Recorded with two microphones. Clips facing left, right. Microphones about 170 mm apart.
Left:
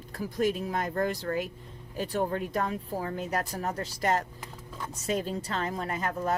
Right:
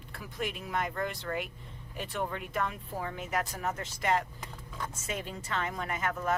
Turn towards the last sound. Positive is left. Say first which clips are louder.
# left 2 dB
turn(degrees=35)  # may be behind; listen again after turning